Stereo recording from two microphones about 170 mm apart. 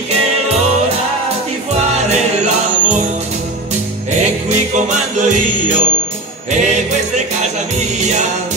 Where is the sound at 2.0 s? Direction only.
40° right (ahead or behind).